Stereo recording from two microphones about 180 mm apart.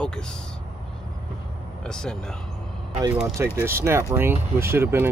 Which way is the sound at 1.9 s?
5° left (ahead or behind).